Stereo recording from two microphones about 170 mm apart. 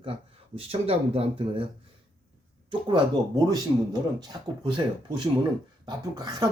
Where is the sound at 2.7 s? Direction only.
30° right (ahead or behind).